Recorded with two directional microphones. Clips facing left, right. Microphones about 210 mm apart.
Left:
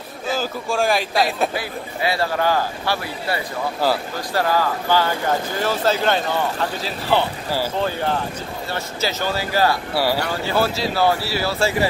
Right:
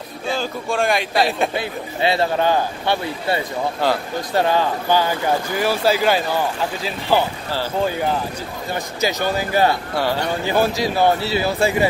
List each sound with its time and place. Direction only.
0.3 s a man's voice: centre (ahead or behind)
1.5 s a man's voice: 25° right (ahead or behind)
3.8 s a man's voice: 5° left (ahead or behind)
4.3 s a man's voice: 20° right (ahead or behind)
8.7 s speech: 15° right (ahead or behind)
9.9 s speech: 10° left (ahead or behind)
10.4 s speech: 15° right (ahead or behind)